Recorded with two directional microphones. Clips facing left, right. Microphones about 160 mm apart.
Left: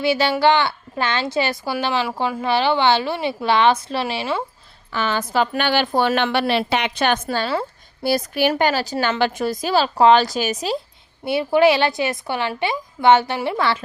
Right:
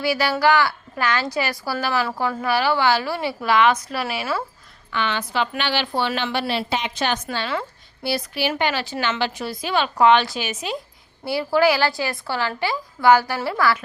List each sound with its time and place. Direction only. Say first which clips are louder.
0.0 s a woman's voice: left 3 dB; 25° left (ahead or behind)
4.9 s a woman's voice: left 2 dB; 40° left (ahead or behind); by 7.2 s 60° left (ahead or behind)
7.3 s a woman's voice: left 4 dB; 35° left (ahead or behind)
8.0 s a woman's voice: left 5 dB; 45° left (ahead or behind)
11.3 s a woman's voice: left 3 dB; 20° left (ahead or behind)